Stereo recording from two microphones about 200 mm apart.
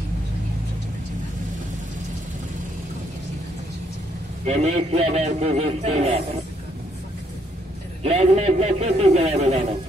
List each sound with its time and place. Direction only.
4.5 s a man's voice: 30° right (ahead or behind)
8.0 s a man's voice: 35° right (ahead or behind)